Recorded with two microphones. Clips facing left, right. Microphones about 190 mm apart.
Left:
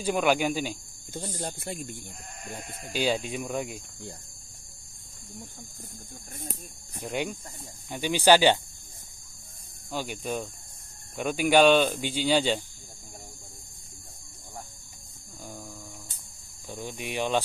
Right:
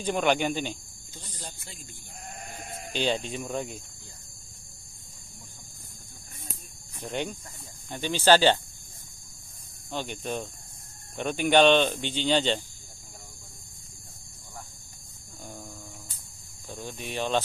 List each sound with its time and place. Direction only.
0.0 s speech: 10° left (ahead or behind)
1.1 s speech: 50° left (ahead or behind)
2.9 s speech: 10° left (ahead or behind)
7.0 s speech: 10° left (ahead or behind)
9.8 s speech: 10° left (ahead or behind)
15.4 s a sound: centre (ahead or behind)
16.6 s speech: 15° left (ahead or behind)